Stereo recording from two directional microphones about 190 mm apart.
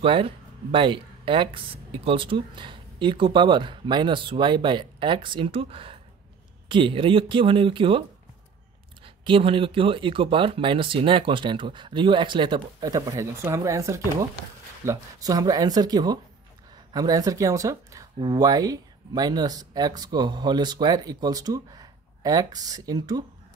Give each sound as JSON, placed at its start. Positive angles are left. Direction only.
{"t": 0.0, "sound": "speech", "side_deg": -25}
{"t": 9.0, "sound": "speech", "side_deg": -25}